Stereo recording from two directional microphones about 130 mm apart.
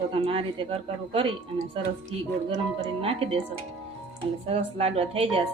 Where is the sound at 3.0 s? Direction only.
50° right (ahead or behind).